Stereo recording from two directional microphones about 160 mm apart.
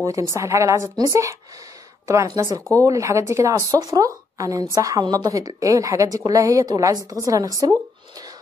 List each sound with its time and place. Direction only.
0.0 s a woman's voice: 20° right (ahead or behind)